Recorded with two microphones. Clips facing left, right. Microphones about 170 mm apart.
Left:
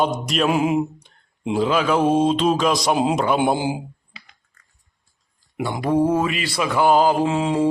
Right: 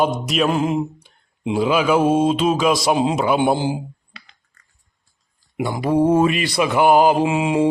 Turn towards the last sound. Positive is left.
turn(degrees=-10)  # may be behind; listen again after turning